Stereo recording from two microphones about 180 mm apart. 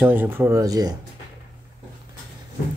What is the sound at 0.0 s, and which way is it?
Speech, 10° right (ahead or behind).